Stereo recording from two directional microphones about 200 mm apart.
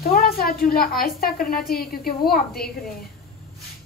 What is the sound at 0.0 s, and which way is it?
A woman's voice, 45° left (ahead or behind).